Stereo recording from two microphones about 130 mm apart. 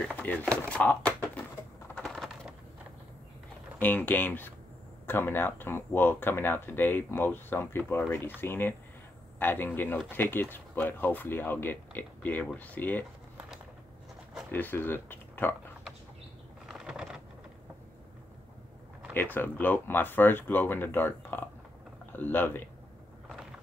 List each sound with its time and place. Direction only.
0.0 s speech: 10° left (ahead or behind)
2.0 s crushing: centre (ahead or behind)
3.8 s speech: 15° left (ahead or behind)
14.5 s speech: 15° left (ahead or behind)
16.6 s a sound: 5° right (ahead or behind)
19.3 s speech: 15° left (ahead or behind)